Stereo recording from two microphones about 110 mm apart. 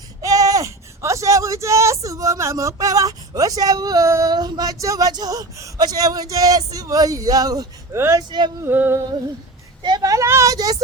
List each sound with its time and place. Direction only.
0.2 s speech: 30° right (ahead or behind)
7.9 s a sound: 25° right (ahead or behind)
9.8 s a woman's voice: 35° right (ahead or behind)